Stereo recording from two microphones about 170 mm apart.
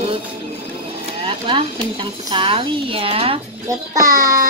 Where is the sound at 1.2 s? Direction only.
30° right (ahead or behind).